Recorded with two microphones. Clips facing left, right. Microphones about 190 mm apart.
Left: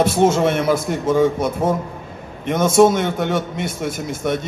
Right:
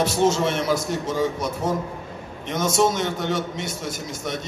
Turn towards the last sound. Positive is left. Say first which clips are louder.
# left 8 dB
turn(degrees=55)  # may be behind; listen again after turning